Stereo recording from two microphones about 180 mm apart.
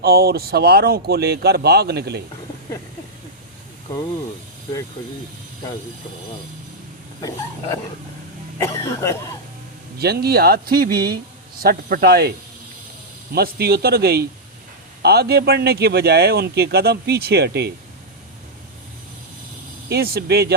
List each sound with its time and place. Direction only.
0.0 s speech: 60° right (ahead or behind)
7.2 s a sound: 20° left (ahead or behind)
8.5 s speech: 15° left (ahead or behind)
10.0 s speech: 60° right (ahead or behind)
13.3 s speech: 60° right (ahead or behind)
19.9 s speech: 60° right (ahead or behind)